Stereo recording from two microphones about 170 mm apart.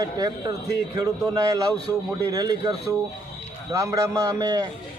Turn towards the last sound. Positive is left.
turn(degrees=-20)  # may be behind; listen again after turning